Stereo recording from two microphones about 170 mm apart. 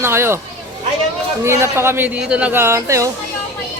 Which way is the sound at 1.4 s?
15° right (ahead or behind).